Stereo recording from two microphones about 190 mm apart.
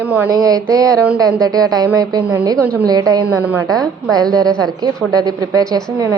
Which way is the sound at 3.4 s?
10° right (ahead or behind).